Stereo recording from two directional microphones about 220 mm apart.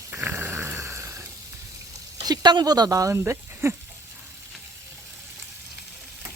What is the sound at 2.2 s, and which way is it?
Speech, 20° right (ahead or behind).